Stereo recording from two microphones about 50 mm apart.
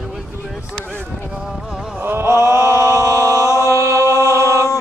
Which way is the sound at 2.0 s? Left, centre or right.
Right.